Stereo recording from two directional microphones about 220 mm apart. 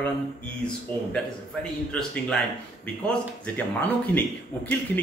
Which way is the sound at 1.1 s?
5° left (ahead or behind).